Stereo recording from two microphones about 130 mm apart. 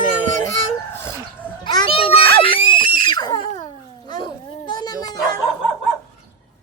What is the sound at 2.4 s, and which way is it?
Screaming, 40° left (ahead or behind).